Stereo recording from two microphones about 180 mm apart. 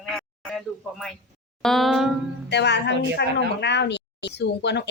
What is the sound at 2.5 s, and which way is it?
Speech, 70° left (ahead or behind).